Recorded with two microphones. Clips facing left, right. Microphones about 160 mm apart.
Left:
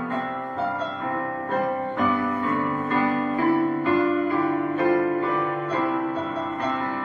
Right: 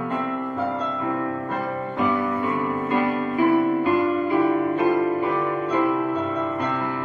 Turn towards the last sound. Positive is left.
turn(degrees=-20)  # may be behind; listen again after turning